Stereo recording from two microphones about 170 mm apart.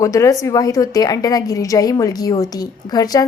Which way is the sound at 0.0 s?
20° left (ahead or behind).